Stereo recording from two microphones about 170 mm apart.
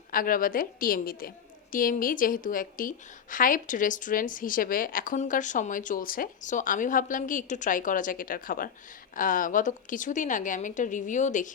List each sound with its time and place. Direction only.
0.1 s a woman's voice: 55° left (ahead or behind)